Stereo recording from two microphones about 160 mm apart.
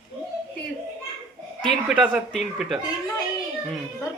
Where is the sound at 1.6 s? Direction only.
Centre (ahead or behind).